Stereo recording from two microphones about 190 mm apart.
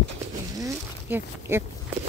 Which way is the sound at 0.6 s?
10° right (ahead or behind).